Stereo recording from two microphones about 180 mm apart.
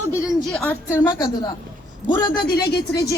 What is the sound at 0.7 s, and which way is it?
Speech, 20° left (ahead or behind).